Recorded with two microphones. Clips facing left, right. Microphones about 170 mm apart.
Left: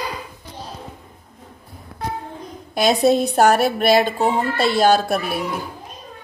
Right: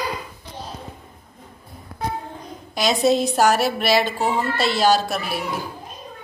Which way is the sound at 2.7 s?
55° left (ahead or behind).